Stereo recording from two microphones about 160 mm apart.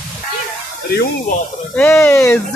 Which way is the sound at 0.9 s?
65° left (ahead or behind).